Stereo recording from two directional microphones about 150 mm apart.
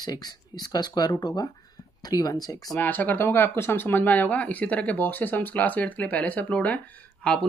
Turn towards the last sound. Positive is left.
turn(degrees=10)  # may be behind; listen again after turning